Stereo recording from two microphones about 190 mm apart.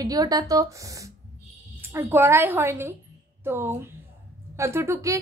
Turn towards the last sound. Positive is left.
turn(degrees=-15)  # may be behind; listen again after turning